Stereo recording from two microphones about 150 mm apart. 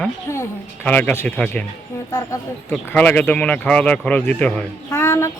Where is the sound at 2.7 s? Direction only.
10° left (ahead or behind).